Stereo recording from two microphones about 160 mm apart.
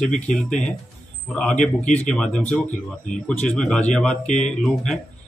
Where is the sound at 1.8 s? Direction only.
50° left (ahead or behind).